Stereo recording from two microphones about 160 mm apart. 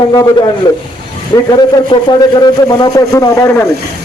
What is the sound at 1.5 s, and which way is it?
A man's voice, 30° left (ahead or behind).